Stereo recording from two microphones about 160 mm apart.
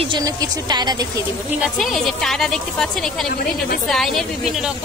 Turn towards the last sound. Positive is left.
turn(degrees=0)  # may be behind; listen again after turning